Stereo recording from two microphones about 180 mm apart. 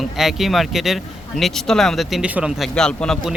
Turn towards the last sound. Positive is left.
turn(degrees=5)  # may be behind; listen again after turning